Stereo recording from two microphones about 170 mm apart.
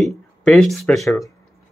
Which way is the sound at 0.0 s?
Centre (ahead or behind).